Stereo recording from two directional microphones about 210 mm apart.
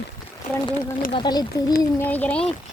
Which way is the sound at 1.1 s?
20° left (ahead or behind).